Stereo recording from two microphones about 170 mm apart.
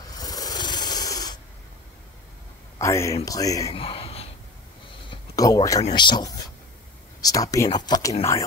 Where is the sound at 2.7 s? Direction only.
15° left (ahead or behind).